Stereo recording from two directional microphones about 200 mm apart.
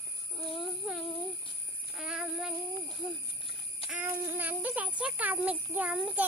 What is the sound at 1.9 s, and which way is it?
Child singing, 5° right (ahead or behind).